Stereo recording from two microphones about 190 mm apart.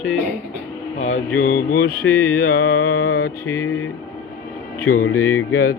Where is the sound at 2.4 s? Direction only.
55° left (ahead or behind).